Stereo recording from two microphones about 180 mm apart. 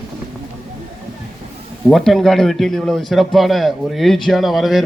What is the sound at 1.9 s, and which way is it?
Speech, centre (ahead or behind).